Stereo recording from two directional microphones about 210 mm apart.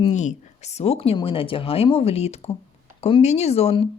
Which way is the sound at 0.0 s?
35° left (ahead or behind).